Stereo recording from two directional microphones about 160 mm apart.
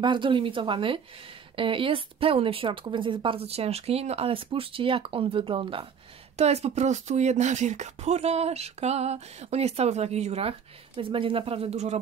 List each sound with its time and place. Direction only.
0.0 s speech: 30° right (ahead or behind)